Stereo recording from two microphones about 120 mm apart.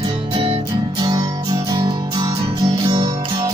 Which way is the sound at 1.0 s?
35° right (ahead or behind).